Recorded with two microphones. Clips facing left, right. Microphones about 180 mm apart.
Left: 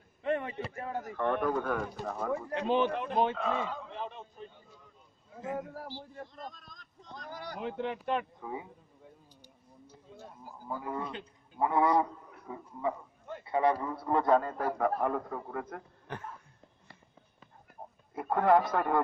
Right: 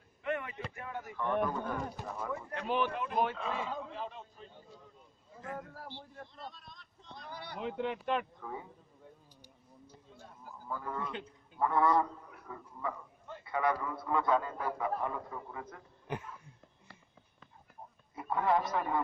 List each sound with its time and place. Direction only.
0.2 s a sound: 35° left (ahead or behind)
0.7 s speech: 35° left (ahead or behind)
1.1 s speech: 60° left (ahead or behind)
2.5 s speech: 20° left (ahead or behind)
2.9 s speech: 35° left (ahead or behind)
3.3 s a man's voice: 55° left (ahead or behind)
5.4 s speech: 20° left (ahead or behind)
5.8 s a man's voice: 5° left (ahead or behind)
6.3 s a man's voice: 45° left (ahead or behind)
7.6 s speech: centre (ahead or behind)
8.4 s a man's voice: 15° left (ahead or behind)
10.7 s a man's voice: 15° left (ahead or behind)
13.4 s a man's voice: 30° left (ahead or behind); by 15.8 s 60° left (ahead or behind)
18.1 s speech: 55° left (ahead or behind)